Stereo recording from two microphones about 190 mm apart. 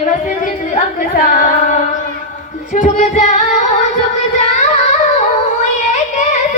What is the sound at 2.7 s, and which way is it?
Music, 40° left (ahead or behind).